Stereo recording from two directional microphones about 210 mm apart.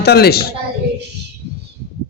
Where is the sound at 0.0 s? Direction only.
50° left (ahead or behind).